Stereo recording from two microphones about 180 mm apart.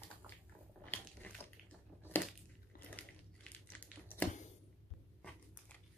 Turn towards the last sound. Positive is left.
turn(degrees=10)  # may be behind; listen again after turning